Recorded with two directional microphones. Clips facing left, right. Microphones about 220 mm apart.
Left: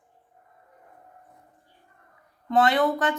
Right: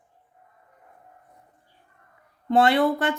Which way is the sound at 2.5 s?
30° right (ahead or behind).